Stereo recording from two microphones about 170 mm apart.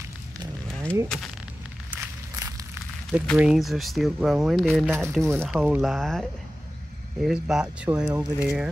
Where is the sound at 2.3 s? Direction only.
20° right (ahead or behind).